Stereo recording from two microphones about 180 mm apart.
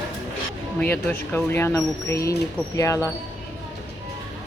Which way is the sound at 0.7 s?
10° left (ahead or behind).